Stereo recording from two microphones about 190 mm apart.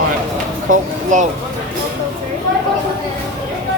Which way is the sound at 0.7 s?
40° right (ahead or behind).